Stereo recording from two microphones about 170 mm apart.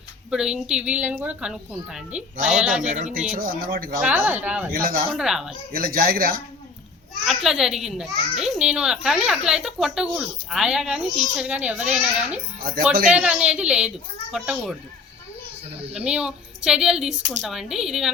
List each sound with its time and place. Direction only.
0.3 s a child's voice: 5° right (ahead or behind)
2.8 s speech: 50° right (ahead or behind)
4.0 s a child's voice: 10° right (ahead or behind)
4.7 s speech: 60° right (ahead or behind)
5.1 s a child's voice: 5° right (ahead or behind)
5.7 s speech: 55° right (ahead or behind)
7.3 s a child's voice: centre (ahead or behind)
16.0 s a child's voice: 5° right (ahead or behind)